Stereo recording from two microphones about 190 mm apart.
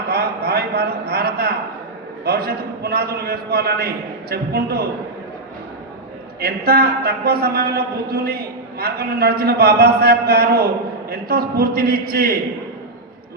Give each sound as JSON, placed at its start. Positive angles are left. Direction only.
{"t": 0.1, "sound": "a sound", "side_deg": -55}
{"t": 2.2, "sound": "a man's voice", "side_deg": -55}
{"t": 6.4, "sound": "a man's voice", "side_deg": -55}